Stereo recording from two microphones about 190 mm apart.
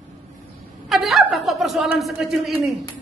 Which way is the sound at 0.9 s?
Centre (ahead or behind).